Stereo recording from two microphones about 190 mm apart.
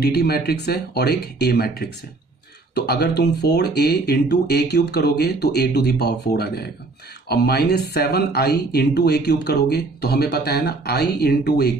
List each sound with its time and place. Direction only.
0.0 s speech: 55° left (ahead or behind)